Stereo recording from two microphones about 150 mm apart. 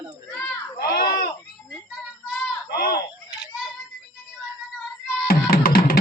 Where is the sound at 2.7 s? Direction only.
90° left.